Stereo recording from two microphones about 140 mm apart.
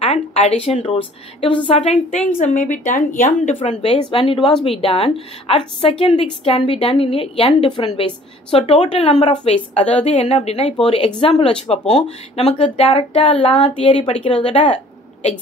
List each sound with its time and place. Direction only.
0.0 s a woman's voice: 45° left (ahead or behind)
1.9 s a woman's voice: 50° left (ahead or behind)
2.3 s a woman's voice: 65° left (ahead or behind)
3.6 s a woman's voice: 50° left (ahead or behind)